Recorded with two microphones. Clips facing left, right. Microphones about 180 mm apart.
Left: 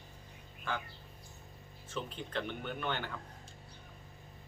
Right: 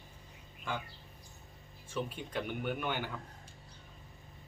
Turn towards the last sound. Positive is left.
turn(degrees=-10)  # may be behind; listen again after turning